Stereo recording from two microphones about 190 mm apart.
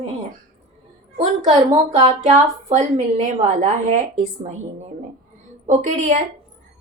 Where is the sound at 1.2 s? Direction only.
35° right (ahead or behind).